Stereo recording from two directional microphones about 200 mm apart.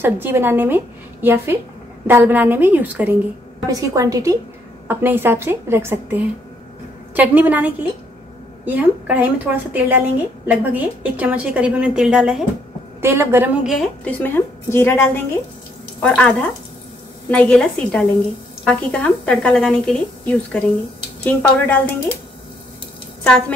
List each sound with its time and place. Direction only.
0.0 s a woman's voice: 10° right (ahead or behind); by 21.7 s 10° left (ahead or behind)